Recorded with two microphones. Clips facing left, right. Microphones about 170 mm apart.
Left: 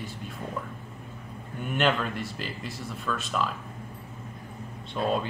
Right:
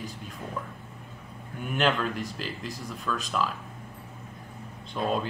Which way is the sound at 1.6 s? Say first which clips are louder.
Even; centre (ahead or behind).